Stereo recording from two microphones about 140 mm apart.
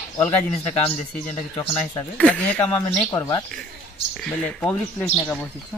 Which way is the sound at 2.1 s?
10° left (ahead or behind).